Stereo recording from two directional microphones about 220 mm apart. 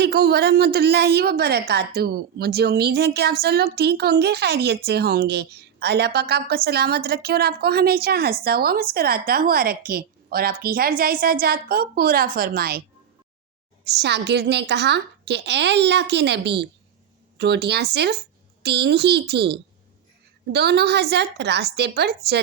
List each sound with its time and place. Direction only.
0.0 s a woman's voice: 45° right (ahead or behind)
13.8 s a woman's voice: 50° right (ahead or behind)